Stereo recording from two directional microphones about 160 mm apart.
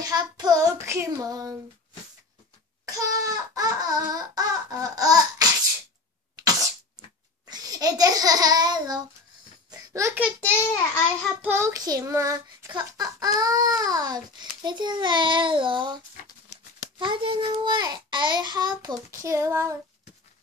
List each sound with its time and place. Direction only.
0.0 s child singing: 25° right (ahead or behind)
2.8 s a sound: 20° right (ahead or behind)
6.3 s sneeze: 20° right (ahead or behind)
7.4 s a child's voice: 25° right (ahead or behind)
9.7 s a sound: 20° right (ahead or behind)
10.4 s a child's voice: 15° left (ahead or behind)
11.4 s child singing: 15° right (ahead or behind)
16.2 s crumpling: 55° left (ahead or behind)
17.0 s child singing: 30° right (ahead or behind)